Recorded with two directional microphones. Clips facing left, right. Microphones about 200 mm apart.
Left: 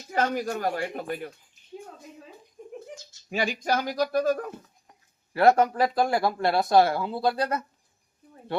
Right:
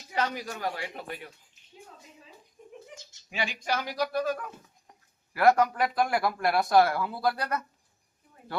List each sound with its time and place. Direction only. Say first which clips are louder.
0.1 s speech: left 5 dB; 45° left (ahead or behind)
1.8 s a sound: left 7 dB; 55° left (ahead or behind)
3.2 s speech: left 5 dB; 40° left (ahead or behind)
5.3 s speech: left 3 dB; 25° left (ahead or behind)